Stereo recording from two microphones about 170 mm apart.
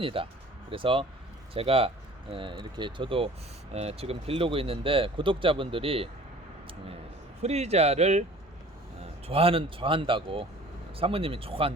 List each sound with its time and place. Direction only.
0.0 s speech: 30° right (ahead or behind)
7.4 s speech: 40° right (ahead or behind)
9.2 s speech: 35° right (ahead or behind)